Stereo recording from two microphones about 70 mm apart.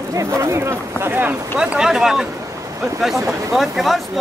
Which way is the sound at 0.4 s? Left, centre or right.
Right.